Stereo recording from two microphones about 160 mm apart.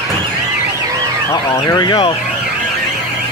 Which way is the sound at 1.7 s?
25° left (ahead or behind).